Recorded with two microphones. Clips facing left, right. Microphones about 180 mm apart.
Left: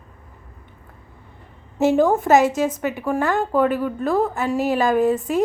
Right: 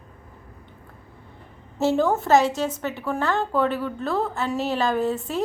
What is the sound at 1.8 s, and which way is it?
Speech, 15° left (ahead or behind).